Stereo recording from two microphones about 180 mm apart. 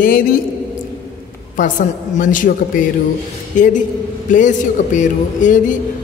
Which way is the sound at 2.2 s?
45° left (ahead or behind).